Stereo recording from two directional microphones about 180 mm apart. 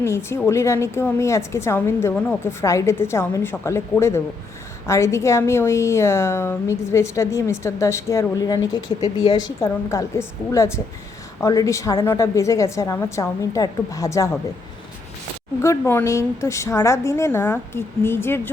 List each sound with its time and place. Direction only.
0.0 s a woman's voice: 15° left (ahead or behind)
15.6 s a woman's voice: 15° left (ahead or behind)